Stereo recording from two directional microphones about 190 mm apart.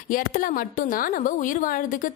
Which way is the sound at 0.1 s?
45° left (ahead or behind).